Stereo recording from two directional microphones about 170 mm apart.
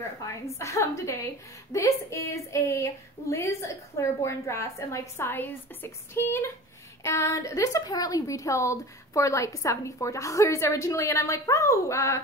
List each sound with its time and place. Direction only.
0.5 s a woman's voice: 15° left (ahead or behind)